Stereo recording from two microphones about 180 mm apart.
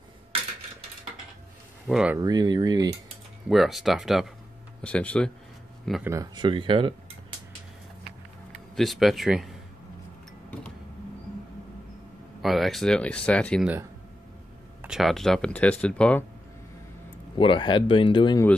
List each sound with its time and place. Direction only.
1.9 s speech: 5° right (ahead or behind)
2.1 s speech: 20° right (ahead or behind)
3.4 s speech: centre (ahead or behind)
6.0 s speech: 20° right (ahead or behind)
8.7 s speech: centre (ahead or behind)
12.4 s speech: centre (ahead or behind)
14.8 s speech: centre (ahead or behind)
17.4 s speech: 30° left (ahead or behind)